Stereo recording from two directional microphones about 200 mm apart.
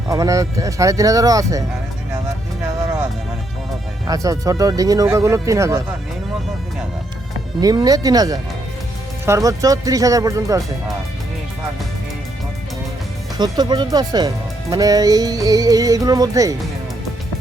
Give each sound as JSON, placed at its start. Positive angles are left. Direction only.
{"t": 0.1, "sound": "speech", "side_deg": -15}
{"t": 4.0, "sound": "speech", "side_deg": -15}
{"t": 7.6, "sound": "speech", "side_deg": -20}
{"t": 13.4, "sound": "speech", "side_deg": -20}